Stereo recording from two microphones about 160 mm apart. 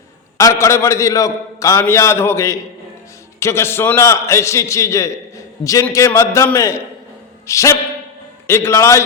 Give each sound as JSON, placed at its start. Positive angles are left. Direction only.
{"t": 0.3, "sound": "a man's voice", "side_deg": 20}